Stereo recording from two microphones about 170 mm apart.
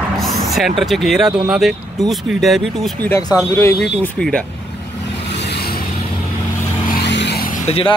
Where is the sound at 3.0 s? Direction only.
15° left (ahead or behind).